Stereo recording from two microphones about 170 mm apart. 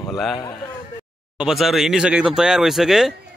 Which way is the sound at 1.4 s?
Centre (ahead or behind).